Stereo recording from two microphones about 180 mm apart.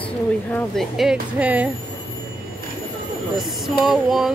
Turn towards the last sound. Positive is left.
turn(degrees=0)  # may be behind; listen again after turning